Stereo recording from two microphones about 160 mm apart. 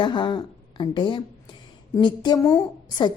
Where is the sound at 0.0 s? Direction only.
30° left (ahead or behind).